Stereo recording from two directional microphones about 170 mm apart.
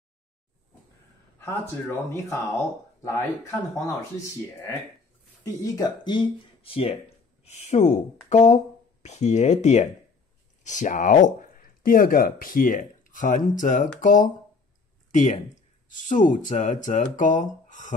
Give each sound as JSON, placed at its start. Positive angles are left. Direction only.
{"t": 1.4, "sound": "speech", "side_deg": 15}
{"t": 5.4, "sound": "speech", "side_deg": 20}